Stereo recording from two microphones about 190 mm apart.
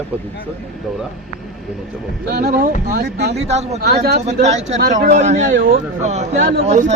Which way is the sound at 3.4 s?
35° right (ahead or behind).